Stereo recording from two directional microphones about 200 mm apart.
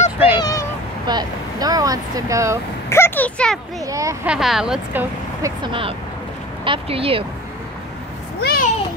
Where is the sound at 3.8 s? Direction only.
15° right (ahead or behind).